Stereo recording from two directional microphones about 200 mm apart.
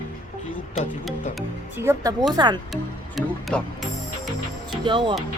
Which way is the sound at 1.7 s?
15° right (ahead or behind).